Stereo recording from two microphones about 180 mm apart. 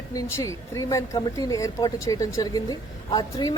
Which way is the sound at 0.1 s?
15° left (ahead or behind).